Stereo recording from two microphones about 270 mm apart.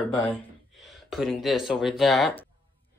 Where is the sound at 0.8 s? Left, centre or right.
Centre.